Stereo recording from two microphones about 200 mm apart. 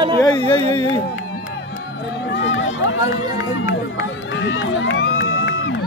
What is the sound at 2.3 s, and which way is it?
Run, 70° left (ahead or behind).